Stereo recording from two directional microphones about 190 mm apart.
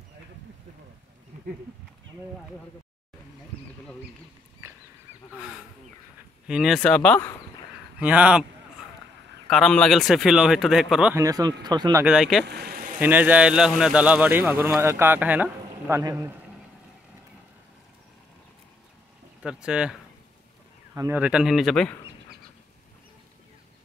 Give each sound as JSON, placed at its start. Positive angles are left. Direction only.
{"t": 6.4, "sound": "speech", "side_deg": -5}
{"t": 8.0, "sound": "a man's voice", "side_deg": -5}
{"t": 9.5, "sound": "speech", "side_deg": 5}
{"t": 11.1, "sound": "speech", "side_deg": -20}
{"t": 12.0, "sound": "speech", "side_deg": -5}
{"t": 12.4, "sound": "vehicle", "side_deg": -55}
{"t": 13.0, "sound": "a man's voice", "side_deg": -10}
{"t": 19.4, "sound": "speech", "side_deg": -5}